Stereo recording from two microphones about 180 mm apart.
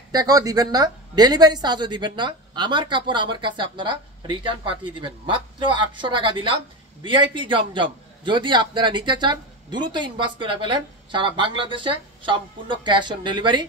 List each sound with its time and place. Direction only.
0.1 s a woman's voice: 20° right (ahead or behind)